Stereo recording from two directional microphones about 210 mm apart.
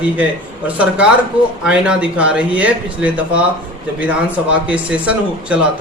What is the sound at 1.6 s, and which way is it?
A man's voice, 5° right (ahead or behind).